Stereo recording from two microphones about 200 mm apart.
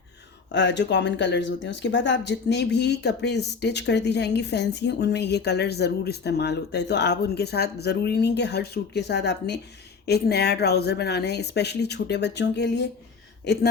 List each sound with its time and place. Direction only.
0.5 s speech: 65° left (ahead or behind)